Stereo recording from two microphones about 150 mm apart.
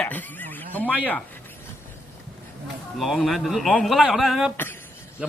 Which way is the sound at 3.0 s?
Centre (ahead or behind).